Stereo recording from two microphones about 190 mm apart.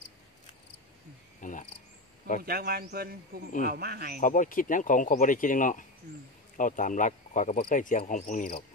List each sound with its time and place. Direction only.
1.4 s insect: 40° left (ahead or behind)
2.4 s a man's voice: 55° right (ahead or behind)
4.2 s speech: 45° left (ahead or behind)